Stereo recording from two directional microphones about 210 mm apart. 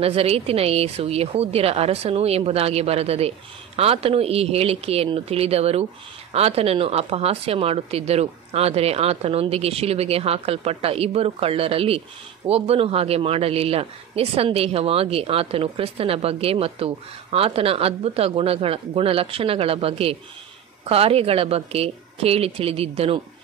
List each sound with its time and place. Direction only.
0.0 s a man's voice: 30° right (ahead or behind)